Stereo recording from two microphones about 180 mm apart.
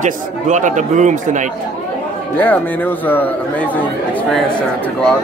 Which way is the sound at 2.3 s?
10° left (ahead or behind).